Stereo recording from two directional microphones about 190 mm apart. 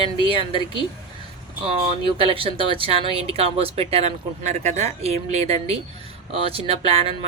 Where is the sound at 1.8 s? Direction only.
30° right (ahead or behind).